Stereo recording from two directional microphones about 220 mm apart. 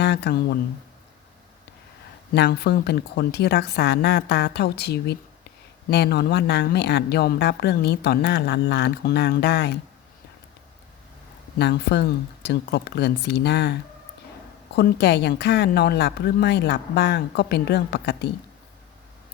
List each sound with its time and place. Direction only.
0.0 s speech: 50° left (ahead or behind)
2.3 s a woman's voice: 50° left (ahead or behind)
11.6 s a woman's voice: 50° left (ahead or behind)
14.8 s a woman's voice: 50° left (ahead or behind)